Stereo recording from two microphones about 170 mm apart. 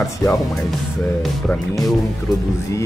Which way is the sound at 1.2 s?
Centre (ahead or behind).